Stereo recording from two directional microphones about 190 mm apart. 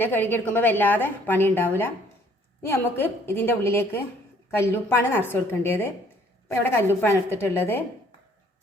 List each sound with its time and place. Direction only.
0.0 s a woman's voice: 10° left (ahead or behind)
7.0 s a woman's voice: 10° left (ahead or behind)